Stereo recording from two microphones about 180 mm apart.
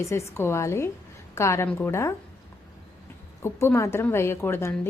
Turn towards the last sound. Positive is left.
turn(degrees=15)  # may be behind; listen again after turning